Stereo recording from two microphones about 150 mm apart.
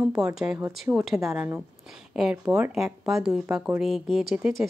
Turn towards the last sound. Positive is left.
turn(degrees=0)  # may be behind; listen again after turning